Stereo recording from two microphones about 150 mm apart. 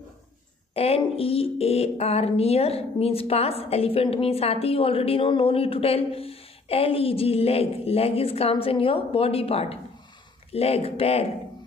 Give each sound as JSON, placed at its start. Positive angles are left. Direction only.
{"t": 0.7, "sound": "speech", "side_deg": 40}